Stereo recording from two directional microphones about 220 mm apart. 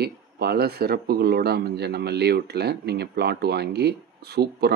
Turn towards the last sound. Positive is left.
turn(degrees=-45)  # may be behind; listen again after turning